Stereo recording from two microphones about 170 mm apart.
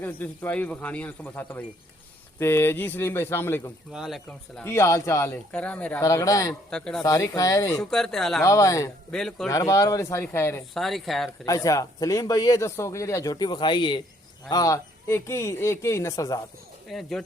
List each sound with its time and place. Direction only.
0.0 s speech: 10° left (ahead or behind)
3.9 s speech: centre (ahead or behind)
4.6 s speech: 15° left (ahead or behind)
6.0 s speech: 20° left (ahead or behind)
6.7 s speech: 5° left (ahead or behind)
7.0 s speech: 20° left (ahead or behind)
7.8 s speech: centre (ahead or behind)
8.4 s speech: 20° left (ahead or behind)
9.1 s speech: 5° left (ahead or behind)
9.5 s speech: 20° left (ahead or behind)
10.8 s speech: centre (ahead or behind)
11.4 s speech: 20° left (ahead or behind)
16.9 s speech: centre (ahead or behind)